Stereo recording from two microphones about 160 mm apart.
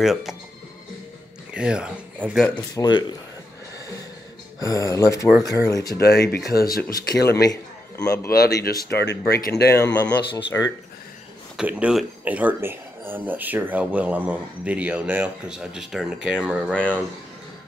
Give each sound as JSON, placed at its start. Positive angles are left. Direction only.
{"t": 0.0, "sound": "speech", "side_deg": 0}
{"t": 1.5, "sound": "speech", "side_deg": -5}
{"t": 2.7, "sound": "speech", "side_deg": 25}
{"t": 4.6, "sound": "speech", "side_deg": 20}
{"t": 5.9, "sound": "speech", "side_deg": 90}
{"t": 6.5, "sound": "speech", "side_deg": 70}
{"t": 8.0, "sound": "speech", "side_deg": 20}
{"t": 8.3, "sound": "speech", "side_deg": 80}
{"t": 10.0, "sound": "speech", "side_deg": 20}
{"t": 11.5, "sound": "speech", "side_deg": -5}